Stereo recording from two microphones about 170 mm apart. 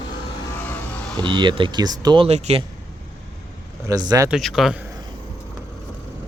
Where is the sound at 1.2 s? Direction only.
30° right (ahead or behind).